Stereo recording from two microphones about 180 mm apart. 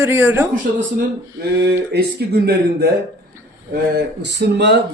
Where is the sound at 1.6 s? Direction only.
65° right (ahead or behind).